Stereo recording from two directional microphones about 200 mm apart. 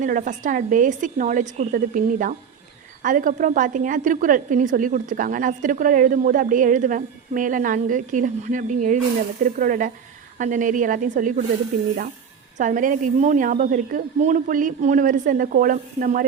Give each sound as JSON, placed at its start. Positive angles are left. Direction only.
{"t": 0.0, "sound": "a woman's voice", "side_deg": -40}
{"t": 12.5, "sound": "a woman's voice", "side_deg": -40}